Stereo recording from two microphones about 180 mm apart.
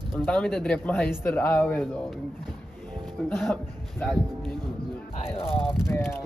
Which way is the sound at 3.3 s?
Centre (ahead or behind).